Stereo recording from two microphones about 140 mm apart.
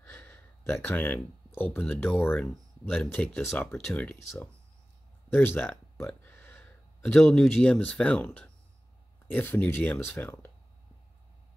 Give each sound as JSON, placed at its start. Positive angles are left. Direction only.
{"t": 0.0, "sound": "gasp", "side_deg": 10}
{"t": 1.6, "sound": "speech", "side_deg": 15}
{"t": 5.3, "sound": "speech", "side_deg": 15}